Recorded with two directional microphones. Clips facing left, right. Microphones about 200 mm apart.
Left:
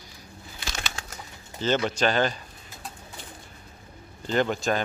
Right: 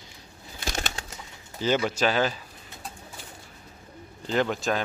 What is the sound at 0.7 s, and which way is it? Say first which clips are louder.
Pigeon: right 3 dB; 35° right (ahead or behind).